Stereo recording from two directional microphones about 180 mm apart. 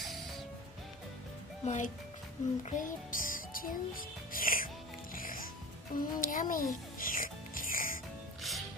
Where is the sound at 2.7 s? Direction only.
50° left (ahead or behind).